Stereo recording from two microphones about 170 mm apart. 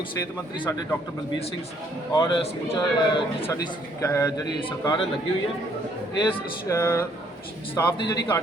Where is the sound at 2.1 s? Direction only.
25° left (ahead or behind).